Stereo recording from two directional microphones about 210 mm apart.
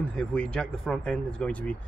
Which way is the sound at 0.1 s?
5° left (ahead or behind).